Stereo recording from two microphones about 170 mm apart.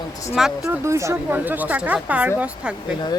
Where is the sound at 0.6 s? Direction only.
15° right (ahead or behind).